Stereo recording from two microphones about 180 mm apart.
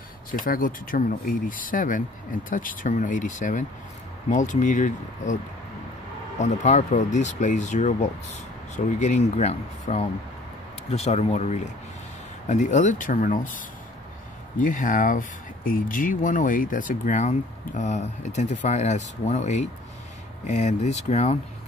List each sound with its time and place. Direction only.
0.3 s speech: 50° left (ahead or behind)
6.4 s speech: 40° left (ahead or behind)